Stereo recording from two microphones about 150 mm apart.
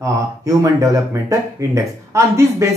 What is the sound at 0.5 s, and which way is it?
Speech, 20° right (ahead or behind).